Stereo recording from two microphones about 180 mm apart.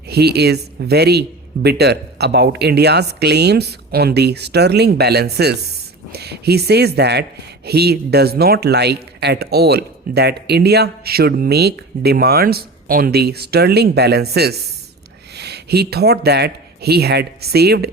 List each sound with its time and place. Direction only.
0.1 s speech: 65° right (ahead or behind)